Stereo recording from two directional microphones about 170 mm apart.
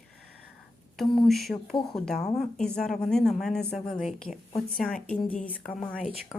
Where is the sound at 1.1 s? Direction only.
Centre (ahead or behind).